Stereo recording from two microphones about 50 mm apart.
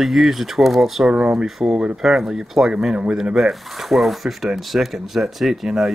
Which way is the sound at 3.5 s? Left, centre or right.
Centre.